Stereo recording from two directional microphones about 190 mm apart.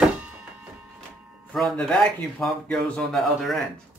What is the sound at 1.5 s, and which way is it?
A man's voice, centre (ahead or behind).